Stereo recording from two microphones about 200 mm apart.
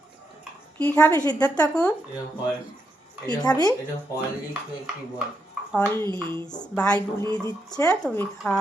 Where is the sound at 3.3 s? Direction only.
20° left (ahead or behind).